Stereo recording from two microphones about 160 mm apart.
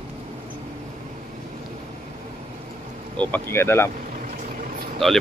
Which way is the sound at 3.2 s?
10° left (ahead or behind).